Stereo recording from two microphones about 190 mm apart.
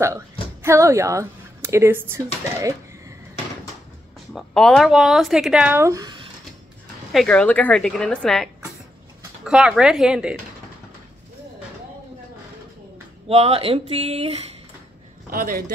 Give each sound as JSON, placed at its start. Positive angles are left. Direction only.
{"t": 0.0, "sound": "a sound", "side_deg": -15}
{"t": 4.3, "sound": "speech", "side_deg": 0}
{"t": 7.1, "sound": "speech", "side_deg": 5}
{"t": 13.3, "sound": "speech", "side_deg": -30}
{"t": 15.2, "sound": "speech", "side_deg": -50}